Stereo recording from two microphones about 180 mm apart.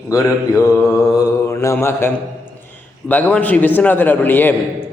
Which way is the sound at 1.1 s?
20° left (ahead or behind).